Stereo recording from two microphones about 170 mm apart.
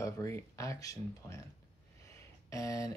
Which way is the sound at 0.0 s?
20° left (ahead or behind).